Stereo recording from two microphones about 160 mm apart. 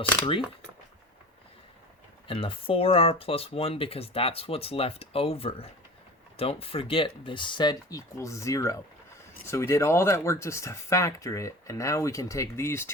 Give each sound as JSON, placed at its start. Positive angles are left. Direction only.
{"t": 2.2, "sound": "speech", "side_deg": 35}